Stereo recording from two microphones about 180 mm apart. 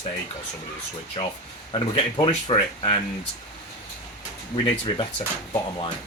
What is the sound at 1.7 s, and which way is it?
Speech, 30° left (ahead or behind).